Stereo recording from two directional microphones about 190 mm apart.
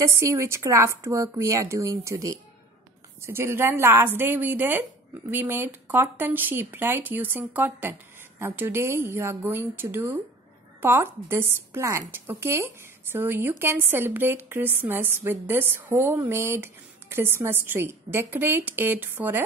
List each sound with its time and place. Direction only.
0.0 s speech: 15° right (ahead or behind)